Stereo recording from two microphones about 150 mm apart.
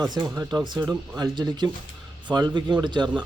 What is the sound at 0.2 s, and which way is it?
A man's voice, 25° right (ahead or behind).